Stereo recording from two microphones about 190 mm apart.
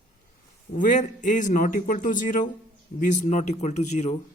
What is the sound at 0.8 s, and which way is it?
A man's voice, 40° left (ahead or behind).